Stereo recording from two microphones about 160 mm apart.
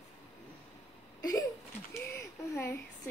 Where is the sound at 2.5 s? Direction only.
15° left (ahead or behind).